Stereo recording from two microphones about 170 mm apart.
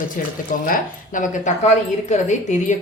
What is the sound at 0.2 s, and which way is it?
A woman's voice, 55° left (ahead or behind).